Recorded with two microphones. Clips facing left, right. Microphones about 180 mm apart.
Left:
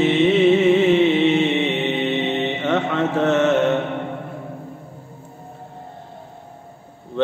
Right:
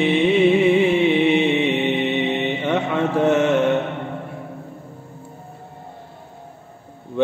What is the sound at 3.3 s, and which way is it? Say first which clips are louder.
Mantra: even; 15° right (ahead or behind).